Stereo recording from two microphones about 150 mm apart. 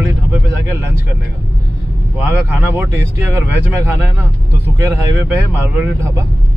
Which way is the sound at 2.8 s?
20° right (ahead or behind).